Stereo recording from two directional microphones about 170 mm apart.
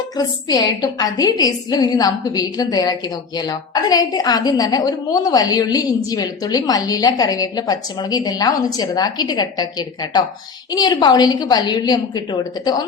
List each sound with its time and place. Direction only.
0.2 s a woman's voice: 20° left (ahead or behind)